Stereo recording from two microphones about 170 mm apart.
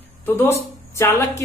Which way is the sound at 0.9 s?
15° left (ahead or behind).